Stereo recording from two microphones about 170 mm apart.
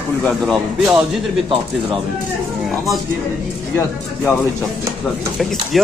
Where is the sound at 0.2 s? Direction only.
Centre (ahead or behind).